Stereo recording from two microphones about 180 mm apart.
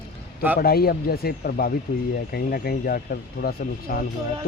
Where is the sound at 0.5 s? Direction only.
55° left (ahead or behind).